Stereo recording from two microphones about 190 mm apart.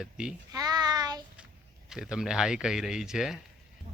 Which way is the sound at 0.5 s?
20° right (ahead or behind).